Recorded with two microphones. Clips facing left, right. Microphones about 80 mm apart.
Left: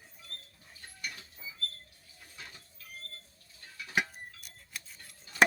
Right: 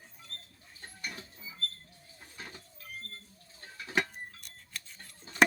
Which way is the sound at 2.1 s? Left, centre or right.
Right.